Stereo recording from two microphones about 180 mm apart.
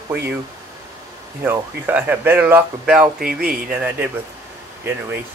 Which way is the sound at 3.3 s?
55° right (ahead or behind).